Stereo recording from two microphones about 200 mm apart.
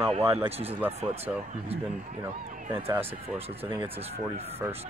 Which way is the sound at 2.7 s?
10° right (ahead or behind).